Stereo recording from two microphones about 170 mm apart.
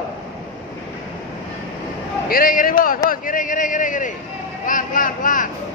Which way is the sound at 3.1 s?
50° left (ahead or behind).